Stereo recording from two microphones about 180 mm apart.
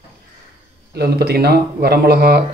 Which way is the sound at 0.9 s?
65° right (ahead or behind).